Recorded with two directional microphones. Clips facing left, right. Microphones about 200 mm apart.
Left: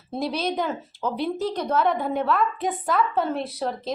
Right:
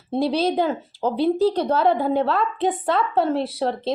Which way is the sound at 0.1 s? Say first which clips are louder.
Right 6 dB; 30° right (ahead or behind).